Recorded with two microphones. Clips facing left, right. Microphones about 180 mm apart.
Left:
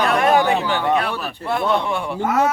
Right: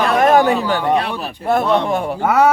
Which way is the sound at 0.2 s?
40° right (ahead or behind).